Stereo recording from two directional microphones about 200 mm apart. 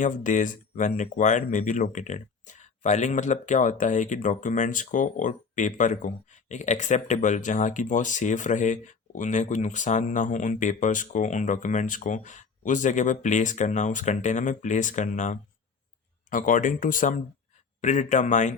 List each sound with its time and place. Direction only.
0.0 s speech: 40° left (ahead or behind)